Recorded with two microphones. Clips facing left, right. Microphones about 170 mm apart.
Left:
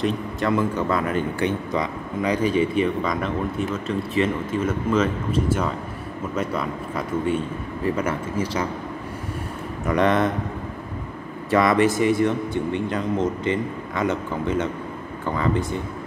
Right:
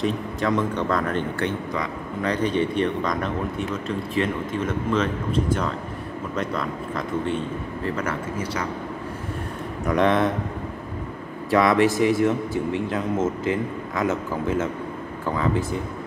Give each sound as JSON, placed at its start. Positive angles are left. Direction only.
{"t": 0.0, "sound": "speech", "side_deg": 0}
{"t": 7.8, "sound": "speech", "side_deg": 20}
{"t": 9.8, "sound": "speech", "side_deg": 0}
{"t": 11.5, "sound": "speech", "side_deg": 0}